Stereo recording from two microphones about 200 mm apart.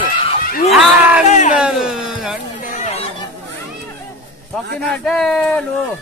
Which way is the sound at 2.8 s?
30° left (ahead or behind).